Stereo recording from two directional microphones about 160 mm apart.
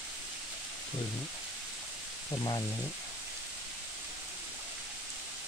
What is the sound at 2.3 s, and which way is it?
Speech, 20° left (ahead or behind).